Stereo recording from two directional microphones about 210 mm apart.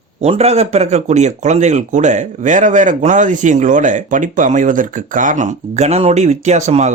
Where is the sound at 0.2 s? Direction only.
30° right (ahead or behind).